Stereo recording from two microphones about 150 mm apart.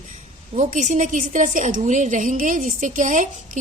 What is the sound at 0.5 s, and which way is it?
A woman's voice, 60° right (ahead or behind).